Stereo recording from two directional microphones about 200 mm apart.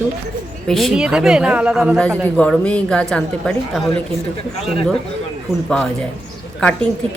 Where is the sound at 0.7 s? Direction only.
Centre (ahead or behind).